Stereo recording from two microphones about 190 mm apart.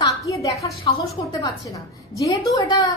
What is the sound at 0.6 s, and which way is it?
A woman's voice, 20° left (ahead or behind).